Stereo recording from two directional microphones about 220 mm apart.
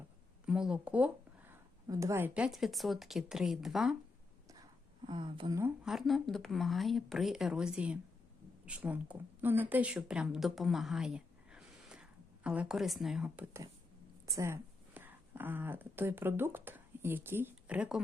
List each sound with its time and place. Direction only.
0.4 s speech: 5° right (ahead or behind)
5.0 s speech: 20° right (ahead or behind)
5.8 s a woman's voice: centre (ahead or behind)